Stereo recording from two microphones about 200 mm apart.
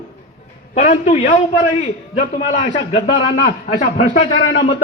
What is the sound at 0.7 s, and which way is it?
A man's voice, 40° left (ahead or behind).